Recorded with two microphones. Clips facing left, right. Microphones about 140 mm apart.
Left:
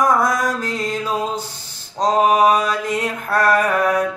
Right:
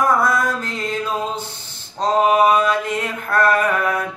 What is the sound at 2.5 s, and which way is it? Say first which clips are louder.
Mantra: right 1 dB; 40° left (ahead or behind).